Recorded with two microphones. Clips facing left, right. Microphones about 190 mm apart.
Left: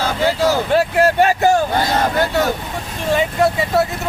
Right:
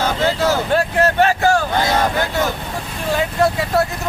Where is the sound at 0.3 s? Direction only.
15° left (ahead or behind).